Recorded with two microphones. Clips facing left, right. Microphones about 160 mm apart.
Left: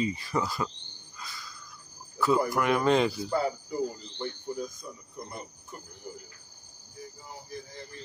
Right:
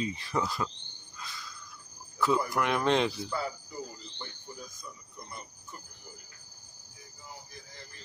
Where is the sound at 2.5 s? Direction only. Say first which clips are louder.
Left 3 dB; 5° left (ahead or behind).